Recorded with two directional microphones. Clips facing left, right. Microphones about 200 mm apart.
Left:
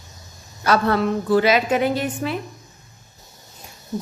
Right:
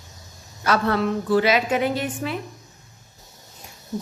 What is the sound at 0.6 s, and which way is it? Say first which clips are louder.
A woman's voice: left 2 dB; 40° left (ahead or behind).